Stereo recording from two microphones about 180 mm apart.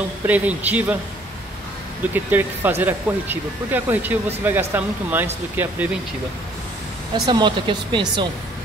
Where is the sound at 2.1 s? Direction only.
10° right (ahead or behind).